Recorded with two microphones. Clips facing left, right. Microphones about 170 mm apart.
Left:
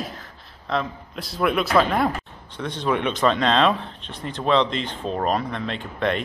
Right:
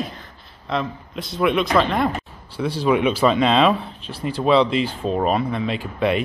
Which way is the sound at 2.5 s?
5° right (ahead or behind).